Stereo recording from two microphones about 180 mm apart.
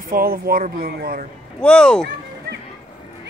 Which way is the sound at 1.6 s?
5° left (ahead or behind).